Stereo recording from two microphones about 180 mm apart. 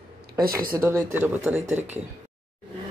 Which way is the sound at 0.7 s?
15° right (ahead or behind).